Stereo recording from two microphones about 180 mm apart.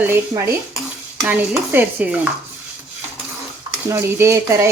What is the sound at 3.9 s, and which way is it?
Dishes, 15° right (ahead or behind).